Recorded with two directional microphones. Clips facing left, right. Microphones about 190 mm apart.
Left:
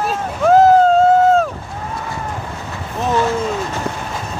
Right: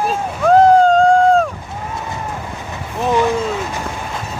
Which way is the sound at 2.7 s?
15° right (ahead or behind).